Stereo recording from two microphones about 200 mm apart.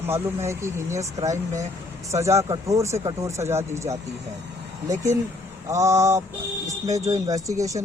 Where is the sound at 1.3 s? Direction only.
35° right (ahead or behind).